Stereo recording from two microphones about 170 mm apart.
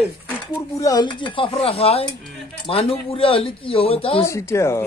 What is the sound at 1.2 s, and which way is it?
Speech, 30° left (ahead or behind).